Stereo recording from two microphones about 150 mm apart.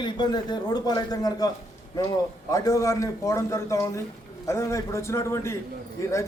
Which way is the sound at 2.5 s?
20° left (ahead or behind).